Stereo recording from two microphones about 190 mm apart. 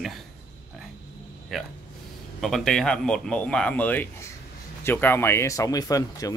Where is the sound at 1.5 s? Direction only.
Centre (ahead or behind).